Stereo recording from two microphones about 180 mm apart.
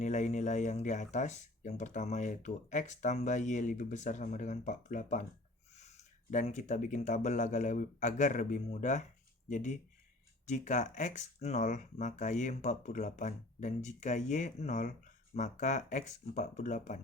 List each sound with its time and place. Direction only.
0.0 s speech: 40° left (ahead or behind)
6.3 s speech: 45° left (ahead or behind)